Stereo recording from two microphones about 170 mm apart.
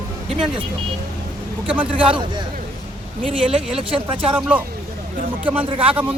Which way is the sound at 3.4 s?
5° right (ahead or behind).